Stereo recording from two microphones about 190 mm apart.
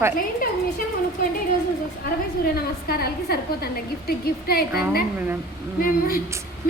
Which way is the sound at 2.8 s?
55° left (ahead or behind).